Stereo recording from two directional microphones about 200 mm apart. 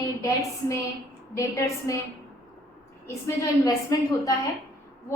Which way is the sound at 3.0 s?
15° left (ahead or behind).